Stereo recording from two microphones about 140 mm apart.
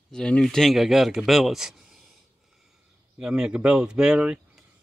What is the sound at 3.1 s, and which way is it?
Speech, 5° right (ahead or behind).